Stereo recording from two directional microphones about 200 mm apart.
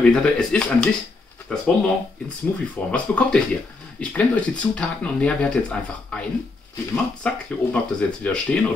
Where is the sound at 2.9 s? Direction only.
5° left (ahead or behind).